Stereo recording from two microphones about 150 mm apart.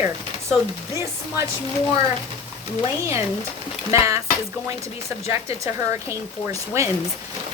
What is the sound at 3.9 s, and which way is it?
Speech, 20° right (ahead or behind).